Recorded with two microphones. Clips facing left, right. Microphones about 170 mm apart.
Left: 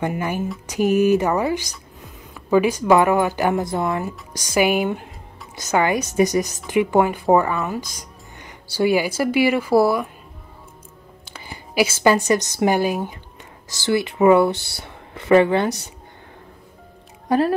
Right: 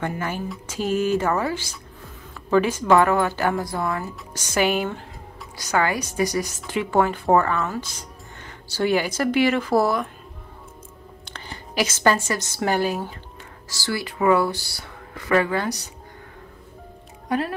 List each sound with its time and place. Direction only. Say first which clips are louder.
0.0 s a woman's voice: left 4 dB; 15° left (ahead or behind)
11.2 s a woman's voice: left 1 dB; 10° left (ahead or behind); by 15.8 s 25° left (ahead or behind)
17.3 s speech: left 7 dB; 40° left (ahead or behind)